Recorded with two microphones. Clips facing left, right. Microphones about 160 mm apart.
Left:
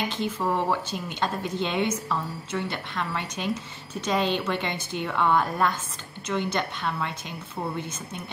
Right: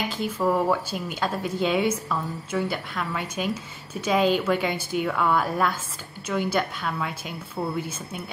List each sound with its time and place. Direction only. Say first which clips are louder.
0.1 s speech: right 3 dB; 5° right (ahead or behind)